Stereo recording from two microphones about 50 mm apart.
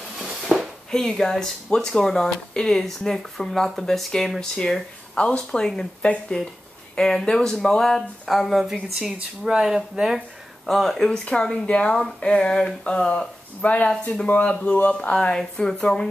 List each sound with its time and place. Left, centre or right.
0.2 s a sound: centre
0.9 s speech: centre
5.1 s speech: centre
8.3 s a woman's voice: centre
10.7 s a woman's voice: centre
11.2 s speech: centre
15.1 s speech: centre